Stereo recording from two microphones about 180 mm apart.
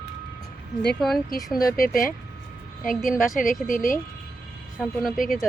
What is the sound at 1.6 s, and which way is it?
Speech, 55° left (ahead or behind).